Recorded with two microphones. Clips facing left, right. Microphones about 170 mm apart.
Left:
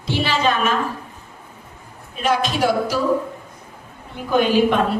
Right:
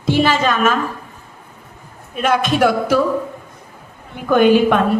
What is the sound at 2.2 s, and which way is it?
Speech, 55° right (ahead or behind).